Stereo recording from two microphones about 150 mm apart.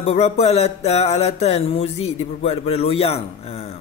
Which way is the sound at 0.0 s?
45° left (ahead or behind).